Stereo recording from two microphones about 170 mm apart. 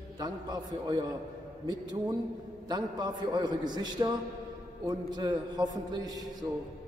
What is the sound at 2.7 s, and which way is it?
A man's voice, 25° right (ahead or behind).